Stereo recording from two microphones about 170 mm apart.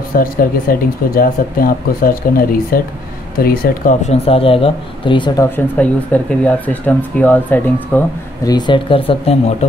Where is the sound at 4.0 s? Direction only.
35° left (ahead or behind).